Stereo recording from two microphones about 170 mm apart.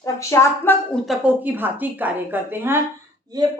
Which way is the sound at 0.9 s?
5° right (ahead or behind).